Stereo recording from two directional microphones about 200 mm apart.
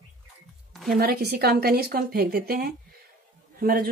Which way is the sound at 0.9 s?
50° right (ahead or behind).